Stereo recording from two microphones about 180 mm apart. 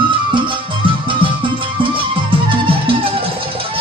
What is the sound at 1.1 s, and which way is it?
Music, 30° right (ahead or behind).